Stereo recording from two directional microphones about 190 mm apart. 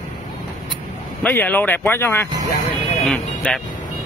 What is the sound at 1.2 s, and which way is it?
Speech, 10° left (ahead or behind).